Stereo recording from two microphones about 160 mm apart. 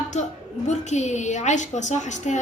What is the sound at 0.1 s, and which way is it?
A woman's voice, 45° left (ahead or behind).